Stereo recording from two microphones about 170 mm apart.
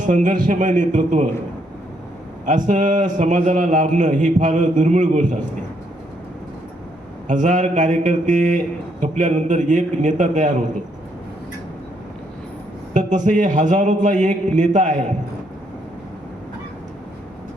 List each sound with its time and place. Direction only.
0.0 s a man's voice: 50° right (ahead or behind)
2.5 s a man's voice: 45° right (ahead or behind)
7.3 s a man's voice: 50° right (ahead or behind)
12.9 s a man's voice: 45° right (ahead or behind)